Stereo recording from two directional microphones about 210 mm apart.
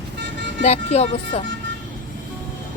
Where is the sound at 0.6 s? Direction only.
30° left (ahead or behind).